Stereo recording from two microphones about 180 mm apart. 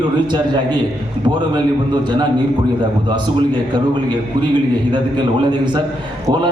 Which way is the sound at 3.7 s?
25° right (ahead or behind).